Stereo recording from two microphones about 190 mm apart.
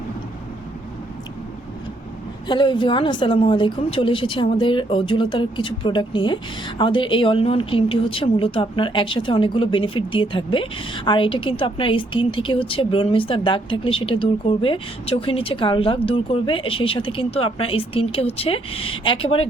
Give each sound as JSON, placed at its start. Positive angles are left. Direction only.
{"t": 2.5, "sound": "a woman's voice", "side_deg": 25}